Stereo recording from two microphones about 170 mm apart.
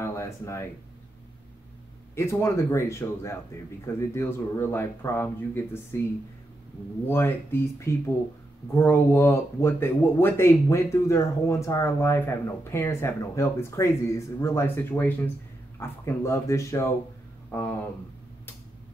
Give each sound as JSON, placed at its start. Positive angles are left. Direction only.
{"t": 0.0, "sound": "a sound", "side_deg": 15}
{"t": 2.1, "sound": "speech", "side_deg": 15}
{"t": 7.1, "sound": "speech", "side_deg": 10}